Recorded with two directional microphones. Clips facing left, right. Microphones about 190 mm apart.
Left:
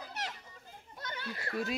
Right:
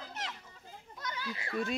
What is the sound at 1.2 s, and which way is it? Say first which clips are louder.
Speech: even; 50° left (ahead or behind).